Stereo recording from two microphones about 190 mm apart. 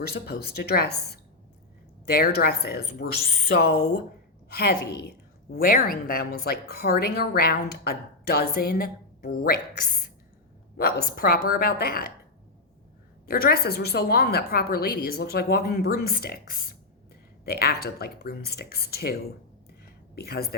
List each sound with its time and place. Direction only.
0.1 s a woman's voice: 60° left (ahead or behind)
10.8 s a woman's voice: 50° left (ahead or behind)
13.2 s a woman's voice: 50° left (ahead or behind)
19.8 s a sound: 55° left (ahead or behind)